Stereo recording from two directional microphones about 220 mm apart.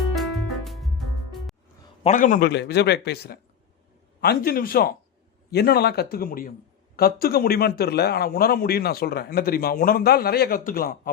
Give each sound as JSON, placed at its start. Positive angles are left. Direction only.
{"t": 0.0, "sound": "music", "side_deg": 0}
{"t": 2.0, "sound": "a man's voice", "side_deg": 35}
{"t": 2.5, "sound": "a man's voice", "side_deg": 50}